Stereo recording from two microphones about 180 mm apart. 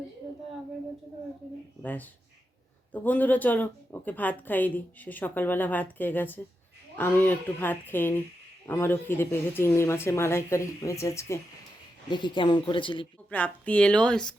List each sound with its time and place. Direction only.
1.8 s speech: 10° left (ahead or behind)
12.1 s speech: 25° left (ahead or behind)
13.3 s speech: 10° left (ahead or behind)